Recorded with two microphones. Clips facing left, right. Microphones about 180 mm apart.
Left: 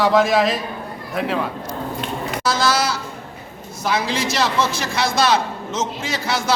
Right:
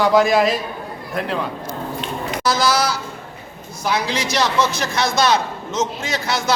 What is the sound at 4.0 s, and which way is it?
Speech, 30° left (ahead or behind).